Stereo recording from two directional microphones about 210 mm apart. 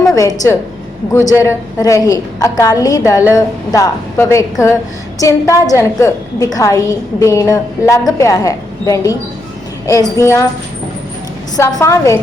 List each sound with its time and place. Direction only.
0.1 s a woman's voice: 15° left (ahead or behind)
11.5 s a woman's voice: 15° left (ahead or behind)